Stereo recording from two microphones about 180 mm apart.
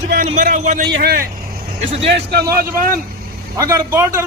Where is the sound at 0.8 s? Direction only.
60° right (ahead or behind).